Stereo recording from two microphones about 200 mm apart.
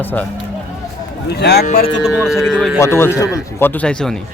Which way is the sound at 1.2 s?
55° left (ahead or behind).